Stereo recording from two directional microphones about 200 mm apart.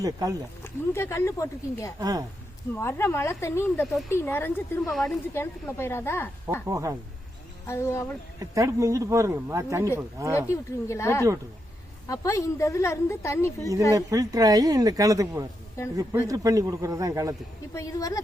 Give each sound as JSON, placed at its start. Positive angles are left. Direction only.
{"t": 0.0, "sound": "speech", "side_deg": -20}
{"t": 0.6, "sound": "a woman's voice", "side_deg": 10}
{"t": 2.0, "sound": "a woman's voice", "side_deg": -20}
{"t": 2.7, "sound": "a woman's voice", "side_deg": 15}
{"t": 5.3, "sound": "a woman's voice", "side_deg": 10}
{"t": 6.7, "sound": "speech", "side_deg": -15}
{"t": 7.7, "sound": "a woman's voice", "side_deg": 15}
{"t": 8.4, "sound": "speech", "side_deg": -15}
{"t": 10.5, "sound": "a woman's voice", "side_deg": 15}
{"t": 13.9, "sound": "speech", "side_deg": -15}
{"t": 17.7, "sound": "a woman's voice", "side_deg": 15}